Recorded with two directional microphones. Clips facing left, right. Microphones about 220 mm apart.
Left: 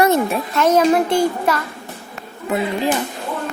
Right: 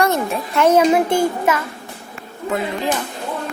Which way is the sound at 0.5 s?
10° right (ahead or behind).